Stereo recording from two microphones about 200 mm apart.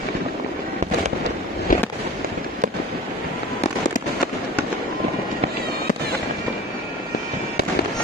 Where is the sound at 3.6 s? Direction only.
40° left (ahead or behind).